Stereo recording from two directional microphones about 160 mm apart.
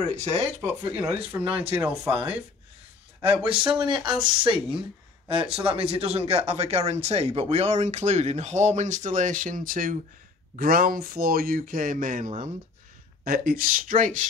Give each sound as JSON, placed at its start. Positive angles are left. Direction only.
{"t": 0.1, "sound": "speech", "side_deg": -45}
{"t": 0.6, "sound": "speech", "side_deg": -15}
{"t": 3.2, "sound": "speech", "side_deg": -35}
{"t": 5.6, "sound": "speech", "side_deg": -35}
{"t": 13.2, "sound": "speech", "side_deg": -65}